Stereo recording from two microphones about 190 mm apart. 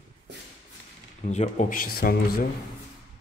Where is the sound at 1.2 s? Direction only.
40° left (ahead or behind).